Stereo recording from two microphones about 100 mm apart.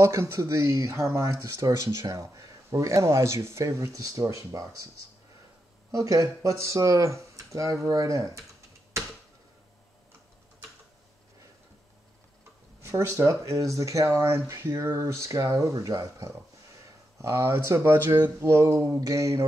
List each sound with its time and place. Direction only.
0.0 s speech: 25° right (ahead or behind)
5.9 s speech: 35° right (ahead or behind)
12.9 s speech: 35° right (ahead or behind)